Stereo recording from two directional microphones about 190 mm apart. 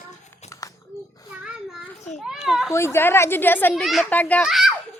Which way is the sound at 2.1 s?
Centre (ahead or behind).